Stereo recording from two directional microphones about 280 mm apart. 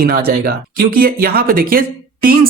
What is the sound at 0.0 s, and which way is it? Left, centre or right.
Speech, right.